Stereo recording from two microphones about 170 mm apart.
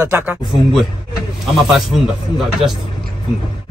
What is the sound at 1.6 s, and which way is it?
Speech, centre (ahead or behind).